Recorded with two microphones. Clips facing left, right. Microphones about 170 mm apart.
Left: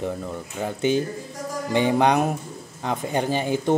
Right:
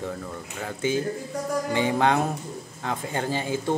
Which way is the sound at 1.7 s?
20° left (ahead or behind).